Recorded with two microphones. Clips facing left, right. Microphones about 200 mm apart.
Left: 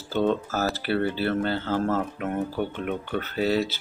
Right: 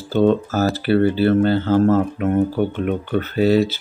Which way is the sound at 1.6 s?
25° right (ahead or behind).